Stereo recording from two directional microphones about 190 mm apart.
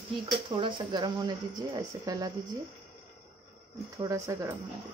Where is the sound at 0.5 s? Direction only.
25° right (ahead or behind).